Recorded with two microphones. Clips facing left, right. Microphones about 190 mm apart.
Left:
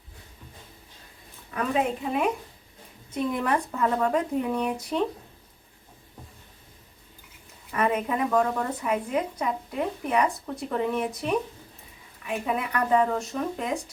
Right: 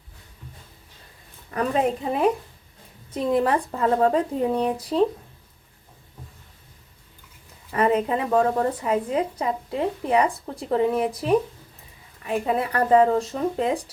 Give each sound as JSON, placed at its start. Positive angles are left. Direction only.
{"t": 1.5, "sound": "a woman's voice", "side_deg": -35}
{"t": 7.7, "sound": "a woman's voice", "side_deg": -30}